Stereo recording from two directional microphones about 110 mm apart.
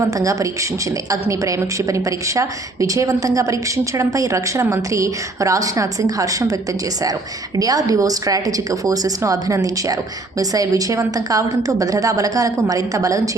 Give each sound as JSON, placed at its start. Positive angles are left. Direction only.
{"t": 0.2, "sound": "a woman's voice", "side_deg": -30}